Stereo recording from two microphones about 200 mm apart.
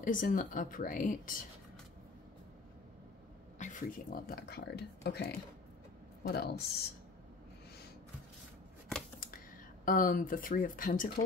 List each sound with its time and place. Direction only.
0.0 s speech: 40° left (ahead or behind)
3.5 s speech: 40° left (ahead or behind)
9.8 s speech: 45° left (ahead or behind)